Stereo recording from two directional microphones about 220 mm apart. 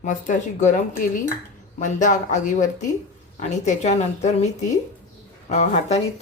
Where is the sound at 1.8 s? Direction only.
35° left (ahead or behind).